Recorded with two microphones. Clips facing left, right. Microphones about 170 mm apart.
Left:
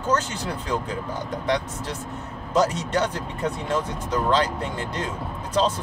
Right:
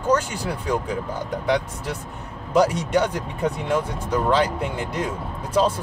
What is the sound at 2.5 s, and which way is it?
A man's voice, 10° right (ahead or behind).